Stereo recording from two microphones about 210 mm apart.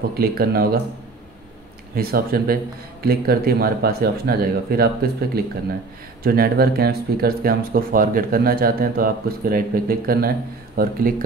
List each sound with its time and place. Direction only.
0.1 s speech: 45° right (ahead or behind)
2.0 s speech: 45° right (ahead or behind)